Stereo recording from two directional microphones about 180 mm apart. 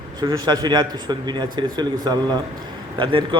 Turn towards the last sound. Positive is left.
turn(degrees=-25)  # may be behind; listen again after turning